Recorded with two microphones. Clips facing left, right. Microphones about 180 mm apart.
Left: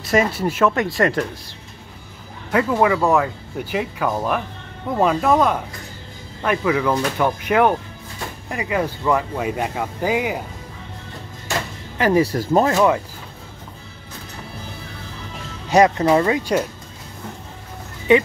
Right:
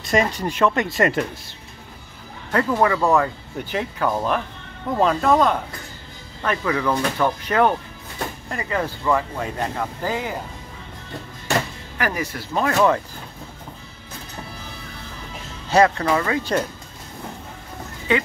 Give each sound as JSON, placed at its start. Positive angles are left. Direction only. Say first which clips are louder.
{"t": 0.0, "sound": "speech", "louder": "left 2 dB", "side_deg": 5}
{"t": 2.5, "sound": "speech", "louder": "left 2 dB", "side_deg": 10}
{"t": 12.0, "sound": "speech", "louder": "left 9 dB", "side_deg": 30}
{"t": 12.6, "sound": "speech", "louder": "left 1 dB", "side_deg": 15}
{"t": 15.7, "sound": "speech", "louder": "left 3 dB", "side_deg": 20}
{"t": 18.1, "sound": "speech", "louder": "left 7 dB", "side_deg": 20}